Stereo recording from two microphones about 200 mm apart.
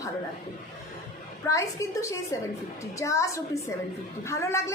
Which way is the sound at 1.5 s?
15° left (ahead or behind).